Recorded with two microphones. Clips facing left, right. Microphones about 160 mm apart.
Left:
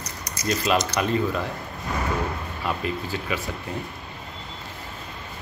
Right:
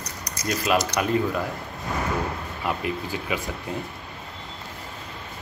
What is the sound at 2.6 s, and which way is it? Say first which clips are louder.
Speech: right 1 dB; 15° right (ahead or behind).